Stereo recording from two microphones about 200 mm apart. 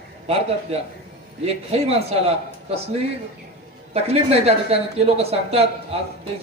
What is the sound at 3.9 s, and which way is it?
Speech, 30° right (ahead or behind).